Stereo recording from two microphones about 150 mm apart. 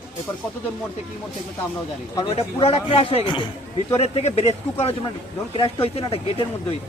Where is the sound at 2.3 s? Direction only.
40° left (ahead or behind).